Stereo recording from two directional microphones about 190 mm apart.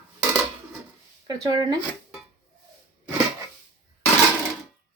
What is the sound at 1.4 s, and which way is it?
Speech, 20° right (ahead or behind).